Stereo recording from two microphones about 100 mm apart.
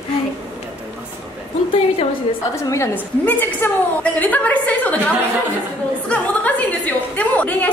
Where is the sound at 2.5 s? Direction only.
30° left (ahead or behind).